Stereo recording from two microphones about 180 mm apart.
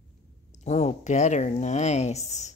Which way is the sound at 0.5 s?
40° left (ahead or behind).